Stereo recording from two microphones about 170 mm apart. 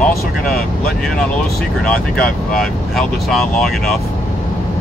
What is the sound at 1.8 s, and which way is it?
Speech, 5° left (ahead or behind).